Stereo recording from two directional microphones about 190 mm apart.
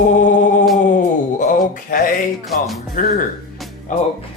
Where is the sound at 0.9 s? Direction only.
40° left (ahead or behind).